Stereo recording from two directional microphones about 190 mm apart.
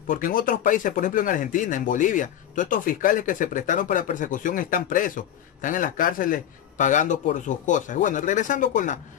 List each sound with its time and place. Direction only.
0.1 s speech: 45° left (ahead or behind)